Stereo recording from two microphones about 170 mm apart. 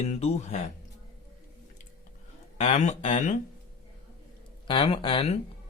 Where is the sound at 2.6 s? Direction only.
40° left (ahead or behind).